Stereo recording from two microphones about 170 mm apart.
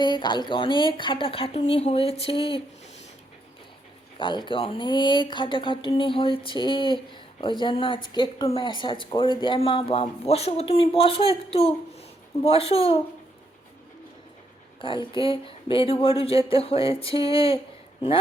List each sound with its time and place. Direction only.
0.0 s speech: 25° left (ahead or behind)
4.2 s speech: 30° left (ahead or behind)
14.8 s speech: 30° left (ahead or behind)